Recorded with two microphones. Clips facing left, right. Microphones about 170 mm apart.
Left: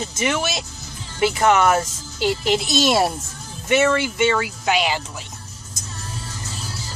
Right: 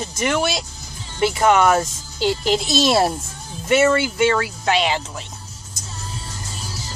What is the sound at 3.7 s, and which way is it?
Speech, 5° right (ahead or behind).